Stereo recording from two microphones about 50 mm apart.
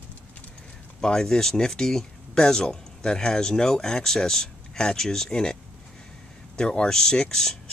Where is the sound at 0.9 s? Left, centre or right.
Centre.